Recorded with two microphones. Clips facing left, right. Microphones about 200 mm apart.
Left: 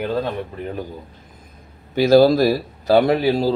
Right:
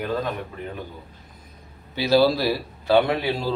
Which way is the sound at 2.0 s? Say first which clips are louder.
Left 6 dB; 50° left (ahead or behind).